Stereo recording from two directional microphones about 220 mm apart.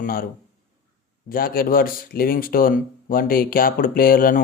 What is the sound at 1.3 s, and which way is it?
Speech, 40° left (ahead or behind).